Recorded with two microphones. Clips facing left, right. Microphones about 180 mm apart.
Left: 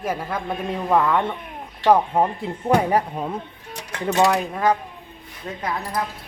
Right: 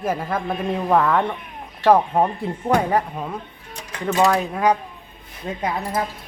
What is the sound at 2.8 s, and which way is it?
Speech, 15° left (ahead or behind).